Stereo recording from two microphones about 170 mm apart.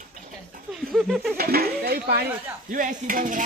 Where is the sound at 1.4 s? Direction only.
65° right (ahead or behind).